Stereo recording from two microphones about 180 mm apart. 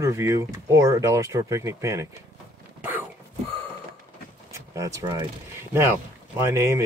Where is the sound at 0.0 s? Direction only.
15° right (ahead or behind).